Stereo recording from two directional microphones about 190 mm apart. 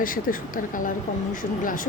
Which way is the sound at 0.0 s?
45° left (ahead or behind).